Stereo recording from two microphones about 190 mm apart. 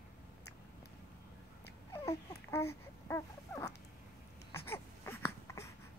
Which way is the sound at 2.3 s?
15° left (ahead or behind).